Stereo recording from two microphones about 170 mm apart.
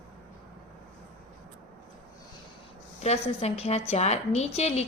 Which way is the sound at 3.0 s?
40° left (ahead or behind).